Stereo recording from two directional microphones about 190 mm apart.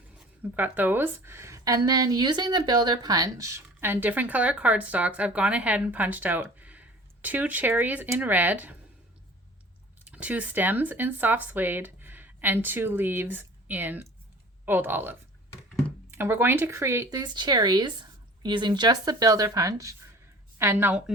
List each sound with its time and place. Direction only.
0.5 s a woman's voice: 10° right (ahead or behind)
10.1 s a woman's voice: 5° right (ahead or behind)